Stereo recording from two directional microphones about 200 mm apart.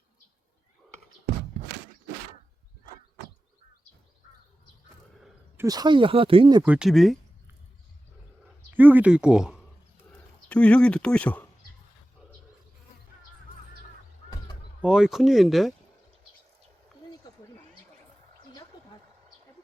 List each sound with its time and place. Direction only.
5.5 s speech: 20° right (ahead or behind)
6.7 s speech: 5° right (ahead or behind)
8.7 s a sound: 10° right (ahead or behind); by 11.4 s 5° left (ahead or behind)
14.8 s speech: 5° right (ahead or behind)